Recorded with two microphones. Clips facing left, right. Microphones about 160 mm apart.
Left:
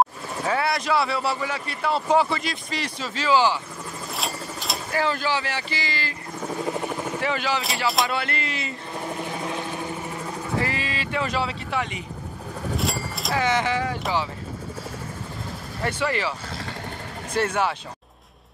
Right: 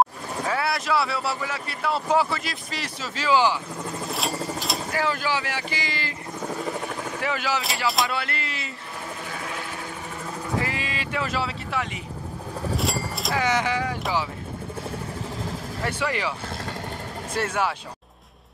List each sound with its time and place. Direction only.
0.5 s a man's voice: centre (ahead or behind)
4.1 s speech: centre (ahead or behind); by 6.1 s 20° right (ahead or behind)
7.2 s a man's voice: 10° right (ahead or behind)
9.2 s helicopter: 25° left (ahead or behind)
10.6 s a man's voice: 10° right (ahead or behind)
15.8 s speech: 10° right (ahead or behind)
17.3 s speech: 5° right (ahead or behind)